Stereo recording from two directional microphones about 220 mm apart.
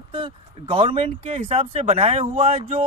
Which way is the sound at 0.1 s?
25° right (ahead or behind).